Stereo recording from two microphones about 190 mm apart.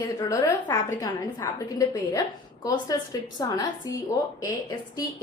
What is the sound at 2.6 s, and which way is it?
A woman's voice, 20° left (ahead or behind).